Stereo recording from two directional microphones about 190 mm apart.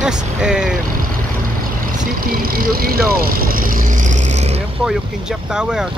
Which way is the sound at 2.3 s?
50° right (ahead or behind).